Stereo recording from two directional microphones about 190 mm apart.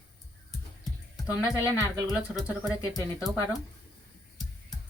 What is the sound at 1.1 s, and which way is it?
Speech, 15° left (ahead or behind).